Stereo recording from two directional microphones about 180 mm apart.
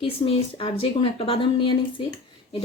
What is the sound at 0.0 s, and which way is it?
Speech, 30° left (ahead or behind).